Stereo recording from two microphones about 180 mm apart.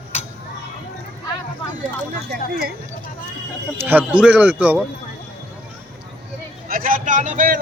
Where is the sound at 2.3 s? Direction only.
60° right (ahead or behind).